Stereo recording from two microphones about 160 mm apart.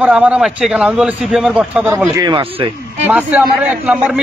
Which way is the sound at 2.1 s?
25° right (ahead or behind).